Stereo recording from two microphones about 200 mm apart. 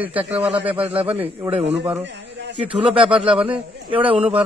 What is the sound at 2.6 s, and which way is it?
Speech, 5° right (ahead or behind).